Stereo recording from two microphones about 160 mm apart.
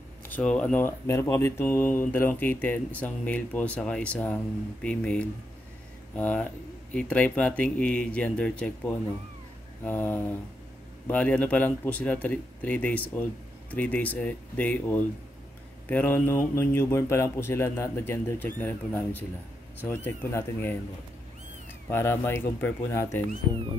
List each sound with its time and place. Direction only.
0.3 s speech: 5° left (ahead or behind)
21.8 s speech: 15° left (ahead or behind)
23.5 s music: 30° right (ahead or behind)